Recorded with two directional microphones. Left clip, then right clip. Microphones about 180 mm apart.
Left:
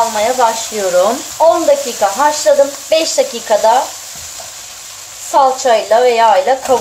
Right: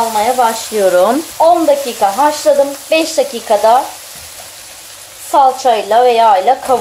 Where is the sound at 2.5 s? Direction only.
25° right (ahead or behind).